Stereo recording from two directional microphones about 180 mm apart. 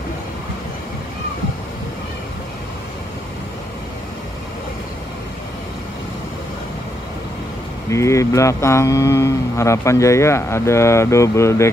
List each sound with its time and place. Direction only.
7.9 s speech: 15° left (ahead or behind)